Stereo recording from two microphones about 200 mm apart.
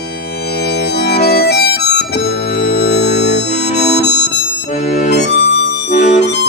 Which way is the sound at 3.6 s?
35° left (ahead or behind).